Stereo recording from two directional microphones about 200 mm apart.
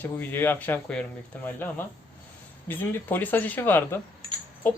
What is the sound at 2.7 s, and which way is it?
Speech, 10° left (ahead or behind).